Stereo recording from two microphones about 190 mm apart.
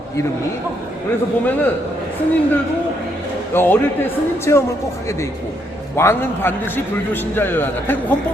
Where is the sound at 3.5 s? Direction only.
10° left (ahead or behind).